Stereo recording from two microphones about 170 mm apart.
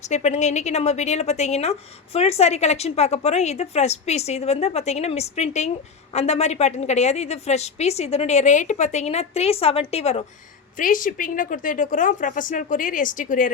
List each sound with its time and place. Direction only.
0.1 s a woman's voice: 40° left (ahead or behind)
10.8 s speech: 50° left (ahead or behind)